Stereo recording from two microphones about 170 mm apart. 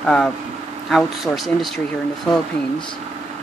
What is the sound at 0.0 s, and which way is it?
Speech, 5° left (ahead or behind).